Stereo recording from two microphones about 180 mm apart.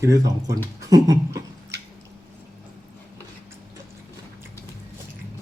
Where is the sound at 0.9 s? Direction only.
20° right (ahead or behind).